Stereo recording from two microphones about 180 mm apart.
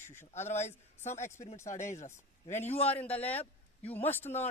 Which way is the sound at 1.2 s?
15° left (ahead or behind).